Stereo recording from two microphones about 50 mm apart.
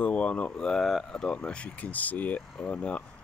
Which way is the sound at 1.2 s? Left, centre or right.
Centre.